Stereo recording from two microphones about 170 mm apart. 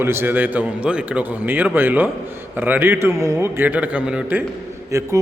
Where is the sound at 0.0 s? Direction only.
15° right (ahead or behind).